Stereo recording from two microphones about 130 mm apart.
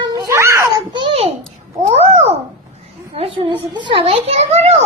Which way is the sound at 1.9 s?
55° right (ahead or behind).